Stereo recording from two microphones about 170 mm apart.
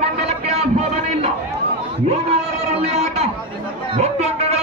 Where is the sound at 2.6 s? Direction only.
40° right (ahead or behind).